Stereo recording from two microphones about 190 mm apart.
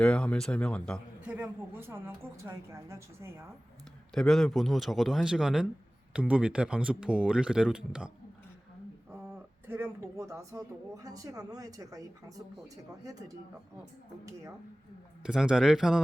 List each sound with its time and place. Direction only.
0.0 s speech: 5° left (ahead or behind)
1.3 s speech: 10° right (ahead or behind)
4.1 s speech: centre (ahead or behind); by 13.3 s 20° right (ahead or behind)
15.2 s speech: 5° right (ahead or behind)